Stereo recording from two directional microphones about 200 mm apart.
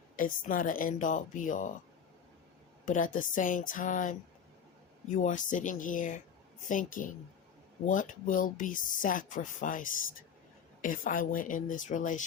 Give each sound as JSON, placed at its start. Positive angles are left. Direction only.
{"t": 0.2, "sound": "speech", "side_deg": 40}
{"t": 2.8, "sound": "speech", "side_deg": 40}